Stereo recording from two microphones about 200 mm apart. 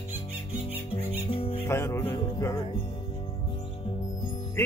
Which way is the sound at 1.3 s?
25° left (ahead or behind).